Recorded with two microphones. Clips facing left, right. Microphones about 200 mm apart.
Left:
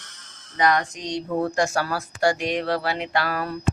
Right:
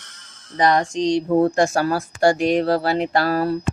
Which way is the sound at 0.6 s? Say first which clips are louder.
Right 4 dB; 30° right (ahead or behind).